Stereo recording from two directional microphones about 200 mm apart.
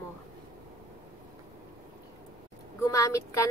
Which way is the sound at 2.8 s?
15° left (ahead or behind).